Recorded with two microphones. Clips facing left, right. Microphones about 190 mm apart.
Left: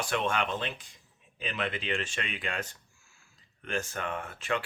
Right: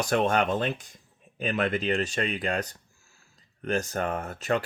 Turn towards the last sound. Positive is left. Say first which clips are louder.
# right 5 dB
turn(degrees=-40)  # may be behind; listen again after turning